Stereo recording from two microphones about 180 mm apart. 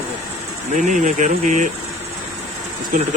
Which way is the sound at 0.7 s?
45° right (ahead or behind).